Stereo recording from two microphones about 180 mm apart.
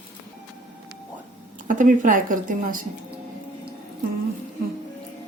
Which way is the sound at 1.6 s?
50° right (ahead or behind).